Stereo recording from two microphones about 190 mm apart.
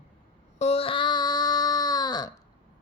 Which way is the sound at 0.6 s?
30° left (ahead or behind).